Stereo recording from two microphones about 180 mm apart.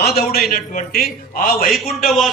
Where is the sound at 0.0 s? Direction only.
60° left (ahead or behind).